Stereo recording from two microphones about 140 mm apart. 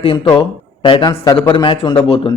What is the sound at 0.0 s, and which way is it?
Speech, 40° left (ahead or behind).